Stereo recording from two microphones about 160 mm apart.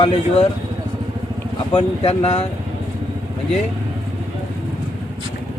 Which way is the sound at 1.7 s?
40° left (ahead or behind).